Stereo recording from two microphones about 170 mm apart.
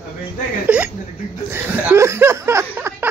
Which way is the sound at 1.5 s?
15° right (ahead or behind).